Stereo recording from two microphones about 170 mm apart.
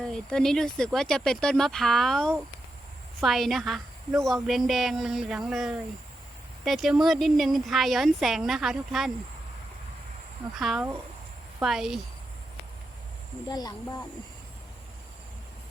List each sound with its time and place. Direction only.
0.0 s a woman's voice: 5° left (ahead or behind)
10.6 s speech: centre (ahead or behind)
13.5 s speech: 25° left (ahead or behind)